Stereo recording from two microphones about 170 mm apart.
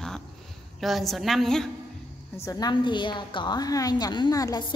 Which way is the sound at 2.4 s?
25° left (ahead or behind).